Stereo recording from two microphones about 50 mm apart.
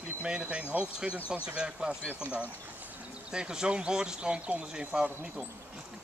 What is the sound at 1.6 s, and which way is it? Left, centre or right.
Speech, centre.